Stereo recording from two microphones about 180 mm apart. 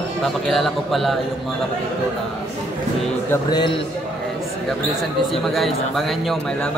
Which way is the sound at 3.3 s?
25° left (ahead or behind).